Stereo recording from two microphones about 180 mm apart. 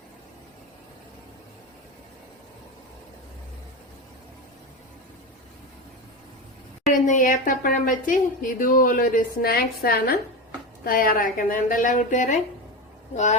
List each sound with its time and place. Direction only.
6.9 s a woman's voice: 45° left (ahead or behind)